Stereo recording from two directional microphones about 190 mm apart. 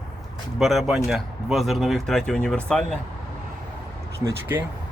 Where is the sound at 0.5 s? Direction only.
Centre (ahead or behind).